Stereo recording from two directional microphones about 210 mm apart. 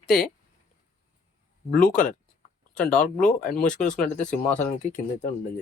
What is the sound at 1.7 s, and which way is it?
Speech, 40° left (ahead or behind).